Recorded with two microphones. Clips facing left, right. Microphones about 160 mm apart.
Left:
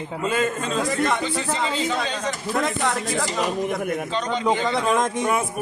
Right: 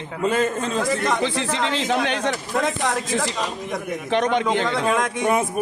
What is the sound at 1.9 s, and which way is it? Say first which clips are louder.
Speech: right 4 dB; 90° right.